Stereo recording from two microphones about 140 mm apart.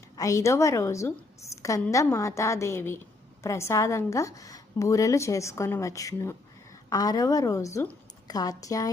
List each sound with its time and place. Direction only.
0.2 s a woman's voice: 20° left (ahead or behind)